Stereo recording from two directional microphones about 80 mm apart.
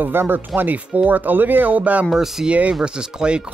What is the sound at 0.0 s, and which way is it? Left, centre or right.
Speech, right.